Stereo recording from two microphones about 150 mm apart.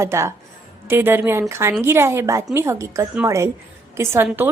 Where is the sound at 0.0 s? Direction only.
20° right (ahead or behind).